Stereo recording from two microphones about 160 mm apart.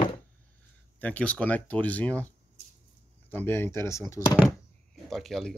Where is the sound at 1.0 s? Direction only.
10° left (ahead or behind).